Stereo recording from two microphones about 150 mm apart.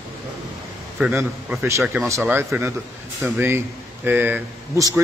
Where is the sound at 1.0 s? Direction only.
10° right (ahead or behind).